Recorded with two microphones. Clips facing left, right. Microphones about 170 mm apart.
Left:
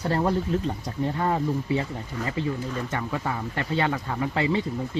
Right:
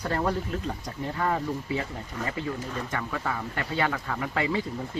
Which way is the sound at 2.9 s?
20° left (ahead or behind).